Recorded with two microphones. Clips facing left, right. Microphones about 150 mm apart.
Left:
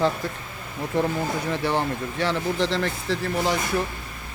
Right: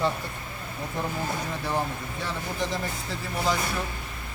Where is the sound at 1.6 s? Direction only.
85° left.